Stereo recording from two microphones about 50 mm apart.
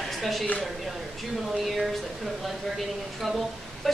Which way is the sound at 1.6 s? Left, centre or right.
Centre.